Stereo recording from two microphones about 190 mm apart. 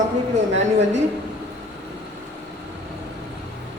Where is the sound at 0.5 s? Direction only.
35° right (ahead or behind).